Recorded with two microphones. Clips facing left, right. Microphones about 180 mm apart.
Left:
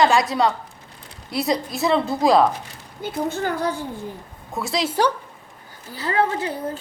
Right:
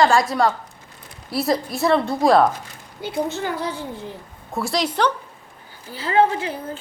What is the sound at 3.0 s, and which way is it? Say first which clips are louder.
Speech: even; 50° left (ahead or behind).